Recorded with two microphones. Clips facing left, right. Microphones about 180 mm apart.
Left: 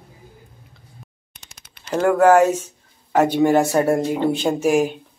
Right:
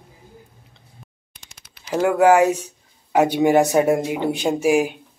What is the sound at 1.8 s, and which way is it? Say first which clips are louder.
Speech: left 1 dB; 10° right (ahead or behind).